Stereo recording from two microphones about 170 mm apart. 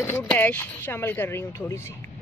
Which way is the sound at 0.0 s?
10° left (ahead or behind).